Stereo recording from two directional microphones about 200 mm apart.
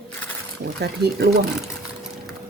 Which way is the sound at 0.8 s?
55° right (ahead or behind).